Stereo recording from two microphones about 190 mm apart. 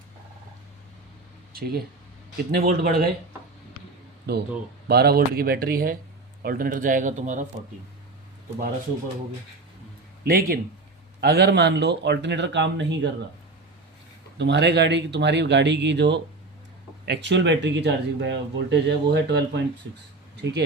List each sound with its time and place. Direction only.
1.5 s speech: 55° right (ahead or behind)
4.3 s speech: 55° right (ahead or behind)
10.2 s speech: 50° right (ahead or behind); by 13.1 s 70° right (ahead or behind)
14.3 s speech: 65° right (ahead or behind)